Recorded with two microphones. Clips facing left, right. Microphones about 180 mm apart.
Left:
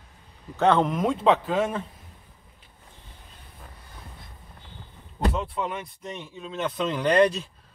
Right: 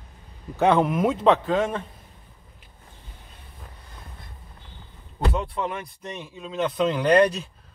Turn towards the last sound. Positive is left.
turn(degrees=0)  # may be behind; listen again after turning